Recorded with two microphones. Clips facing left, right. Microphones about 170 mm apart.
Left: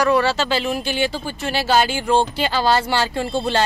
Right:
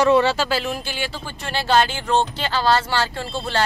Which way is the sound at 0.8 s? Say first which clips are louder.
Left 7 dB; 20° left (ahead or behind).